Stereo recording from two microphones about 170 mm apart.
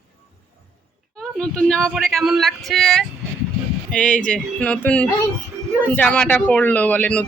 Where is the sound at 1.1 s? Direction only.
5° left (ahead or behind).